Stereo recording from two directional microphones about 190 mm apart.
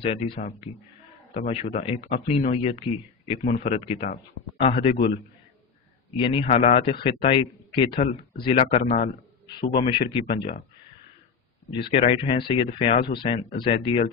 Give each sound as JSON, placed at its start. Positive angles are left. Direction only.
{"t": 0.0, "sound": "a man's voice", "side_deg": 30}
{"t": 6.1, "sound": "a man's voice", "side_deg": 30}
{"t": 11.7, "sound": "a man's voice", "side_deg": 30}